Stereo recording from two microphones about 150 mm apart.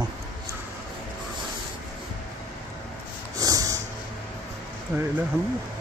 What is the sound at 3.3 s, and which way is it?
Vehicle, 25° right (ahead or behind).